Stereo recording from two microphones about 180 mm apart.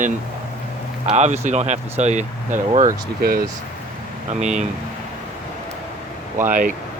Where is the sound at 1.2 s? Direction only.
40° right (ahead or behind).